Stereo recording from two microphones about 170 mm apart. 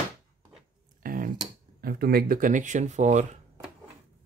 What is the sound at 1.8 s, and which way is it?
Speech, 60° right (ahead or behind).